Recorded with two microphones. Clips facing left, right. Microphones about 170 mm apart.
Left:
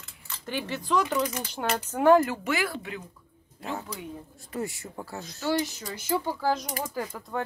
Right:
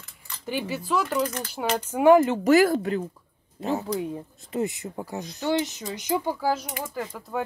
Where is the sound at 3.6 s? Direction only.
30° right (ahead or behind).